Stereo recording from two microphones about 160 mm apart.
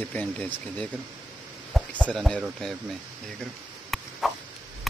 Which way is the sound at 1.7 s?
5° left (ahead or behind).